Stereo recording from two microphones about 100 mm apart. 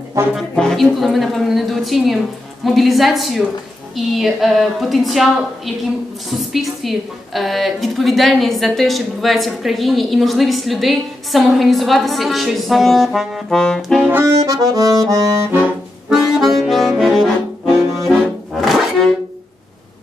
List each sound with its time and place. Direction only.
0.6 s a woman's voice: 5° left (ahead or behind)
6.3 s a woman's voice: centre (ahead or behind)
14.2 s accordion: 35° right (ahead or behind)
16.1 s accordion: centre (ahead or behind)
18.2 s music: centre (ahead or behind)